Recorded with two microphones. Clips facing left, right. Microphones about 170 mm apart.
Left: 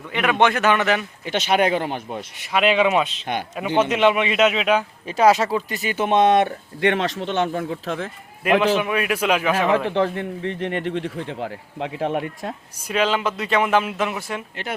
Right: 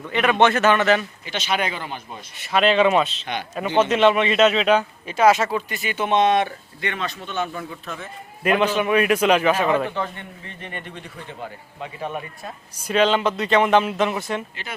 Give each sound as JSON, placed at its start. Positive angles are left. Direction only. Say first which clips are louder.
{"t": 0.1, "sound": "speech", "louder": "right 1 dB", "side_deg": 10}
{"t": 1.2, "sound": "speech", "louder": "left 6 dB", "side_deg": 55}
{"t": 2.4, "sound": "speech", "louder": "right 1 dB", "side_deg": 10}
{"t": 5.0, "sound": "speech", "louder": "left 1 dB", "side_deg": 35}
{"t": 6.1, "sound": "speech", "louder": "left 2 dB", "side_deg": 50}
{"t": 6.8, "sound": "speech", "louder": "left 8 dB", "side_deg": 85}
{"t": 8.4, "sound": "a man's voice", "louder": "left 1 dB", "side_deg": 5}
{"t": 9.6, "sound": "speech", "louder": "left 3 dB", "side_deg": 80}
{"t": 12.9, "sound": "speech", "louder": "right 2 dB", "side_deg": 5}